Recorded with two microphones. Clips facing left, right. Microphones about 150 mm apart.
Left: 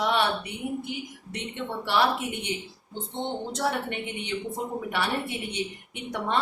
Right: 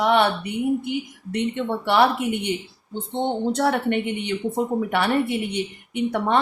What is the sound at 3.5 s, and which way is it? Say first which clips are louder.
A woman's voice: right 9 dB; 60° right (ahead or behind).